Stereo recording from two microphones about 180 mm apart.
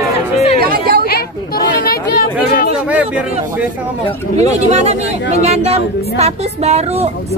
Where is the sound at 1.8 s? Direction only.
60° left (ahead or behind).